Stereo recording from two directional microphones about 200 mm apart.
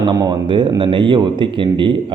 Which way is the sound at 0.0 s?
20° right (ahead or behind).